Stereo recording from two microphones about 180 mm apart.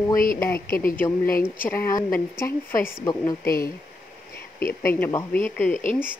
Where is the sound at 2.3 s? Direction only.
15° left (ahead or behind).